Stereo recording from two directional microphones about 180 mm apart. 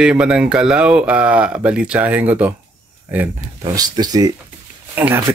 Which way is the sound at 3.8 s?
20° right (ahead or behind).